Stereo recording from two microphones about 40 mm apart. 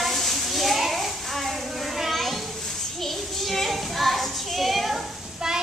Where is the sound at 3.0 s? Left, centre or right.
Centre.